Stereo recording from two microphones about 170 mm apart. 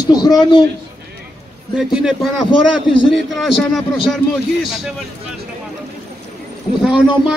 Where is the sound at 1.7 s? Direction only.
5° right (ahead or behind).